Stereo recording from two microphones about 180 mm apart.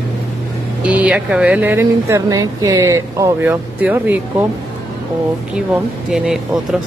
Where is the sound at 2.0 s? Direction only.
20° right (ahead or behind).